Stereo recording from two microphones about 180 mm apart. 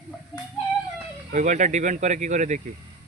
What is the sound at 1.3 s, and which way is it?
Speech, 40° right (ahead or behind).